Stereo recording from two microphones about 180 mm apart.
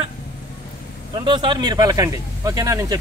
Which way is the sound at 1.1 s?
25° right (ahead or behind).